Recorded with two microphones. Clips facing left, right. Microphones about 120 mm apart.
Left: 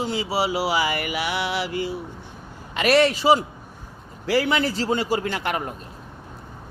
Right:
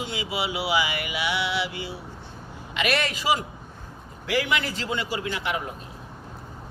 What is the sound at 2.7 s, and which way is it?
A man's voice, 35° left (ahead or behind).